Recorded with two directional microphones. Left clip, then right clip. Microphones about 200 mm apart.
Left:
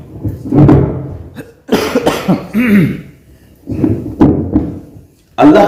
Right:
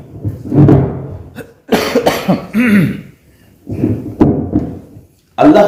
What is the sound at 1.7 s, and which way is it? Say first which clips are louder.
Cough: even; 20° right (ahead or behind).